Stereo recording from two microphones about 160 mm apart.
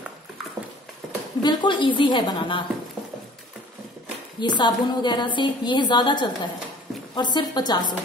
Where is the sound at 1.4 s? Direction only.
30° left (ahead or behind).